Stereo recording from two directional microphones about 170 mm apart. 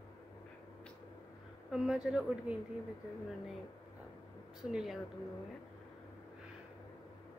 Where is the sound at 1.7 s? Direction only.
5° right (ahead or behind).